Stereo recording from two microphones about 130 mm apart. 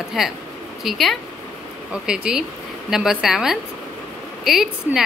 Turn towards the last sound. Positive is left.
turn(degrees=-5)  # may be behind; listen again after turning